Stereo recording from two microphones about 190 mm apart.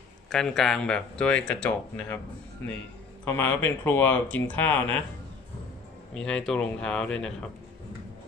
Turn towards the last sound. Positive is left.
turn(degrees=5)  # may be behind; listen again after turning